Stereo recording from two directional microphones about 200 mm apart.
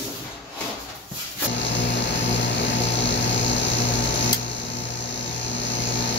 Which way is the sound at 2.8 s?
65° left (ahead or behind).